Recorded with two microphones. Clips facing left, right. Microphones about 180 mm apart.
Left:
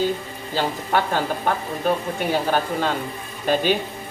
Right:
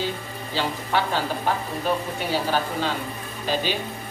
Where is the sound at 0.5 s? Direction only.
50° left (ahead or behind).